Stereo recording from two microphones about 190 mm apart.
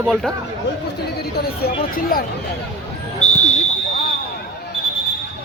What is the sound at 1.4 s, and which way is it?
Speech, 50° left (ahead or behind).